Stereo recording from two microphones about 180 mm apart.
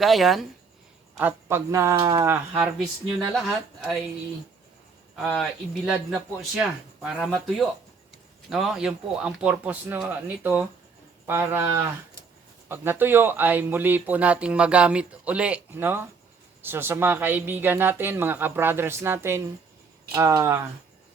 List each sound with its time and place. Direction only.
0.0 s speech: centre (ahead or behind)
1.2 s speech: 15° right (ahead or behind)
2.7 s speech: centre (ahead or behind)
5.3 s speech: centre (ahead or behind)
7.4 s speech: centre (ahead or behind); by 20.6 s 20° right (ahead or behind)